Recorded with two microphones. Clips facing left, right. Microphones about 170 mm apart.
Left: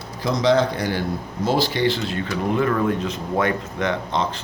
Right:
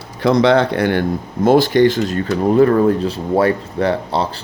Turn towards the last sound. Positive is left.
turn(degrees=-35)  # may be behind; listen again after turning